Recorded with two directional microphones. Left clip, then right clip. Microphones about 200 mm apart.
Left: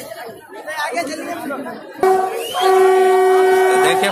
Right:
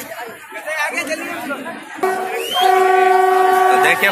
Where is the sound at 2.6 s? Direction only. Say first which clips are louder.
Even; 35° left (ahead or behind).